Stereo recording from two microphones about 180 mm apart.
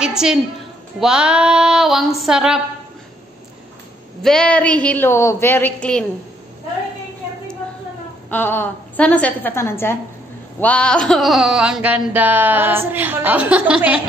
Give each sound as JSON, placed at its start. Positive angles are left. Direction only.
{"t": 0.0, "sound": "a woman's voice", "side_deg": -5}
{"t": 0.9, "sound": "female singing", "side_deg": -5}
{"t": 4.2, "sound": "a woman's voice", "side_deg": 5}
{"t": 8.3, "sound": "a woman's voice", "side_deg": 10}
{"t": 10.6, "sound": "a sound", "side_deg": 5}